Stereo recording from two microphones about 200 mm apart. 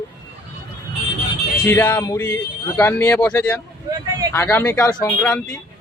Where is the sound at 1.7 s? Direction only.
10° left (ahead or behind).